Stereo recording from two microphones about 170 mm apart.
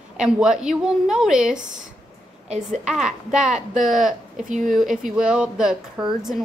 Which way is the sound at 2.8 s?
5° right (ahead or behind).